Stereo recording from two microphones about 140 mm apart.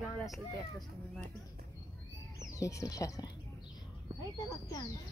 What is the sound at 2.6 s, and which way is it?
Speech, 25° left (ahead or behind).